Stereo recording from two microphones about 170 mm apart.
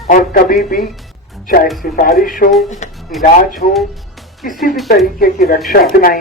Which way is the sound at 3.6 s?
65° left (ahead or behind).